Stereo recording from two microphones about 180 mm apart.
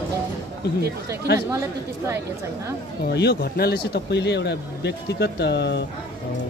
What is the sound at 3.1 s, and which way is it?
Speech, 65° left (ahead or behind).